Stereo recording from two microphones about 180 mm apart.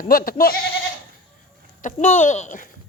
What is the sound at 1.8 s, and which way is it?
Speech, 45° left (ahead or behind).